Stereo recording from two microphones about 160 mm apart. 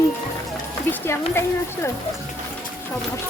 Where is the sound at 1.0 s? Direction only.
15° left (ahead or behind).